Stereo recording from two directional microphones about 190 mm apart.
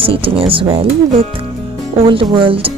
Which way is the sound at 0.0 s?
30° right (ahead or behind).